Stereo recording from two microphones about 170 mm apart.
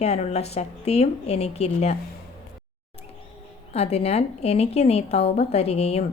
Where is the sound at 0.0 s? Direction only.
40° left (ahead or behind).